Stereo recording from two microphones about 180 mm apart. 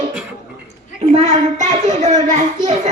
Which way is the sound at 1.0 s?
35° right (ahead or behind).